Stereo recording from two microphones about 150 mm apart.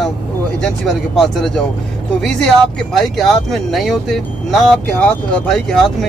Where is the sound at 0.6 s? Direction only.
5° left (ahead or behind).